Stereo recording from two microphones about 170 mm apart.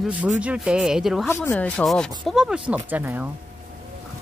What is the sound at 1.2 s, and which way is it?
Speech, 15° left (ahead or behind).